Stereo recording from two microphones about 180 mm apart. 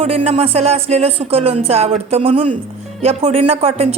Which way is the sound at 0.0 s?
30° right (ahead or behind).